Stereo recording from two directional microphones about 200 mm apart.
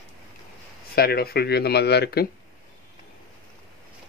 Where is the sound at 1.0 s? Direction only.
50° left (ahead or behind).